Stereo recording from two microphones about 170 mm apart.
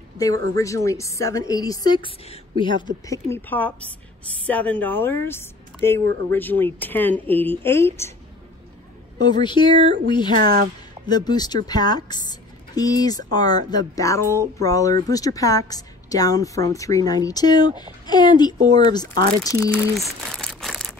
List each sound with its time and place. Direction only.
0.2 s a woman's voice: 20° left (ahead or behind)
3.3 s a woman's voice: 10° left (ahead or behind)
9.2 s a woman's voice: 25° left (ahead or behind)
10.3 s a woman's voice: 60° right (ahead or behind)
11.1 s a woman's voice: 25° left (ahead or behind)
20.2 s a sound: 5° left (ahead or behind)